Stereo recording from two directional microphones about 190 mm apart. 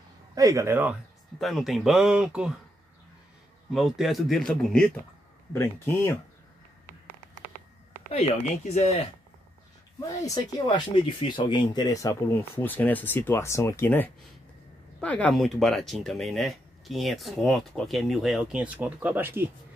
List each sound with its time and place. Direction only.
0.3 s speech: 15° right (ahead or behind)
1.4 s speech: centre (ahead or behind)
3.7 s speech: centre (ahead or behind); by 6.1 s 15° left (ahead or behind)
8.1 s speech: 35° left (ahead or behind)
10.0 s speech: 20° left (ahead or behind); by 19.5 s 10° right (ahead or behind)